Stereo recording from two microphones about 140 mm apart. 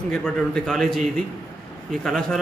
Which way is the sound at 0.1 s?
5° left (ahead or behind).